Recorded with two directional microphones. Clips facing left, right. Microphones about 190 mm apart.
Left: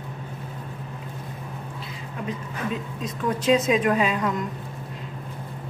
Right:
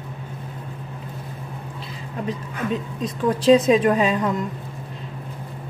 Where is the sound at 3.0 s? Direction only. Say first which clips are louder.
Right 6 dB; 35° right (ahead or behind).